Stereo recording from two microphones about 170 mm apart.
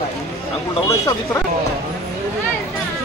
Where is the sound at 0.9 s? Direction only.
15° left (ahead or behind).